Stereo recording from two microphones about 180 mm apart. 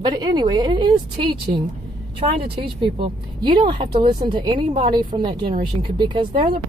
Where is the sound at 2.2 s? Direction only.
35° right (ahead or behind).